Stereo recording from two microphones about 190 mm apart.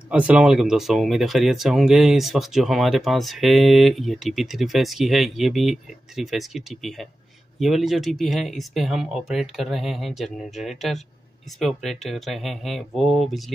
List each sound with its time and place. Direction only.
0.1 s speech: 5° right (ahead or behind)